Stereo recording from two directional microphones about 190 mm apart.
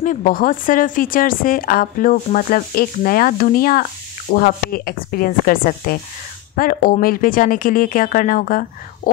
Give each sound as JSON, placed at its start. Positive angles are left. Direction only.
{"t": 0.0, "sound": "speech", "side_deg": 45}